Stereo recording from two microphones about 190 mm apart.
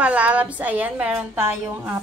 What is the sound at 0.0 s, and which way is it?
A woman's voice, 5° right (ahead or behind).